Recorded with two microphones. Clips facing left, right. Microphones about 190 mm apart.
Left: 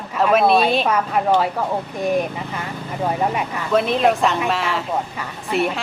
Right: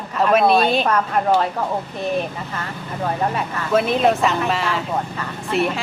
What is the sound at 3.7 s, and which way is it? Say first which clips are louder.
A woman's voice: even; centre (ahead or behind).